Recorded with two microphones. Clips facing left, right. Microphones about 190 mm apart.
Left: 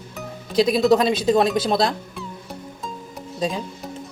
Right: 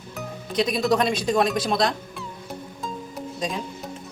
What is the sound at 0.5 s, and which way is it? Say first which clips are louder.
Speech: left 5 dB; 30° left (ahead or behind).